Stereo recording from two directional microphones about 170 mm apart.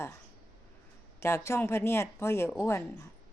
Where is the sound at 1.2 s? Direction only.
15° left (ahead or behind).